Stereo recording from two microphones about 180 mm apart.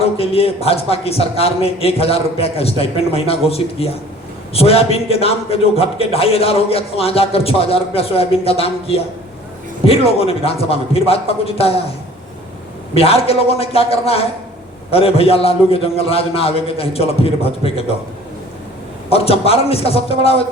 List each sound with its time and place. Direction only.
0.0 s a man's voice: 35° left (ahead or behind)
12.9 s a man's voice: 35° left (ahead or behind)
19.1 s a man's voice: 35° left (ahead or behind)